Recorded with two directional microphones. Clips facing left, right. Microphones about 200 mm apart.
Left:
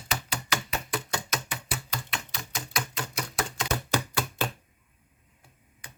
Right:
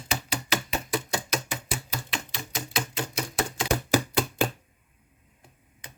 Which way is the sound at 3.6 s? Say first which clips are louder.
Right 5 dB; 10° right (ahead or behind).